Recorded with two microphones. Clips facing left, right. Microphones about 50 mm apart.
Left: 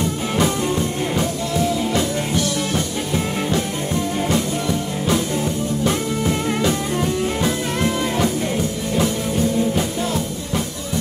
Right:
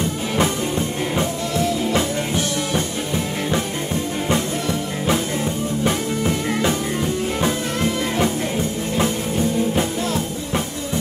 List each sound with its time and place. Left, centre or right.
0.4 s music: right